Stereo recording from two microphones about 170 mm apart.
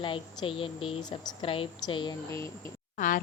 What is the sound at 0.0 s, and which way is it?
Speech, 30° left (ahead or behind).